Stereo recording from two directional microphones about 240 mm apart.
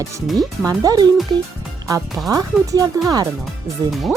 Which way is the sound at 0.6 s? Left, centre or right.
Centre.